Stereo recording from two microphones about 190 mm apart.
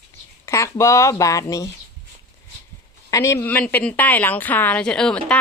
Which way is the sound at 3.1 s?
15° left (ahead or behind).